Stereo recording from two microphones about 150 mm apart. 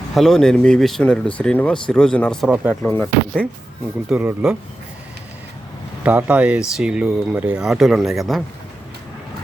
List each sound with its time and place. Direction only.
0.1 s speech: centre (ahead or behind)
4.1 s speech: 10° right (ahead or behind)
6.0 s speech: 10° right (ahead or behind)